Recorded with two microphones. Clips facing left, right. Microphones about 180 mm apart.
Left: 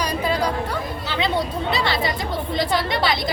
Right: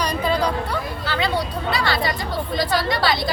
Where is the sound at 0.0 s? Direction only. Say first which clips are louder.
Right 1 dB; 10° left (ahead or behind).